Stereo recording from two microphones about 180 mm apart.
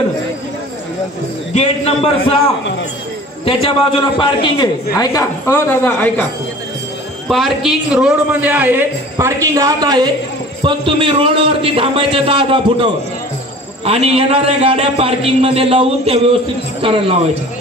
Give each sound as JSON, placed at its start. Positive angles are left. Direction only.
{"t": 1.5, "sound": "a man's voice", "side_deg": 35}
{"t": 3.4, "sound": "a man's voice", "side_deg": 30}
{"t": 7.2, "sound": "a man's voice", "side_deg": 0}